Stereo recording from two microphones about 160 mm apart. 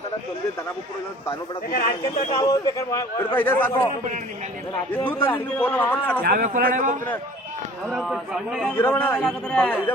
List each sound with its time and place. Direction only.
2.4 s a man's voice: 20° left (ahead or behind)
4.9 s a man's voice: 10° left (ahead or behind)
6.2 s a man's voice: 60° right (ahead or behind)
7.9 s a man's voice: 5° right (ahead or behind)
8.7 s a man's voice: 10° left (ahead or behind)